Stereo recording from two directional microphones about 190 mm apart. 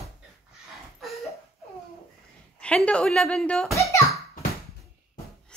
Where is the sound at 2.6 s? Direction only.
5° left (ahead or behind).